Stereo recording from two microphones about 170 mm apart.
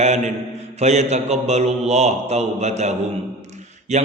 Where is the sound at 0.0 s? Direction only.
40° right (ahead or behind).